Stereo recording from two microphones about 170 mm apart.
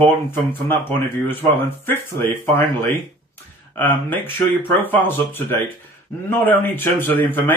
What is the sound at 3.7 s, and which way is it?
A man's voice, 10° left (ahead or behind).